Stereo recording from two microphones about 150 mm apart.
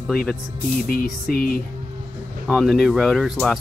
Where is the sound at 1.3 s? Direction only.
75° left (ahead or behind).